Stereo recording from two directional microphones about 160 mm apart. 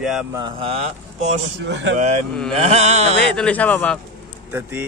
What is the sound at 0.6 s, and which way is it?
Speech, 40° right (ahead or behind).